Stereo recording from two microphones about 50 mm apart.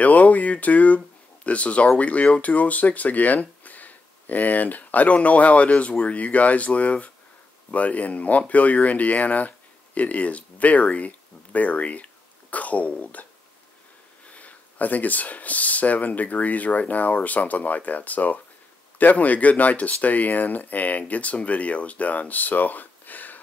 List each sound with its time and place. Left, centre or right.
0.0 s speech: left